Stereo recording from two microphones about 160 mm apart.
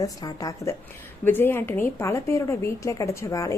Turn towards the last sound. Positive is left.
turn(degrees=20)  # may be behind; listen again after turning